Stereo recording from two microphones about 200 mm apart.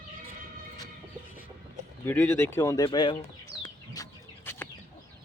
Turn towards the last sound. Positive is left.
turn(degrees=10)  # may be behind; listen again after turning